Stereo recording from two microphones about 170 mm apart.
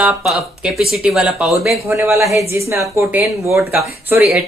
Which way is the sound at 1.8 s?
15° right (ahead or behind).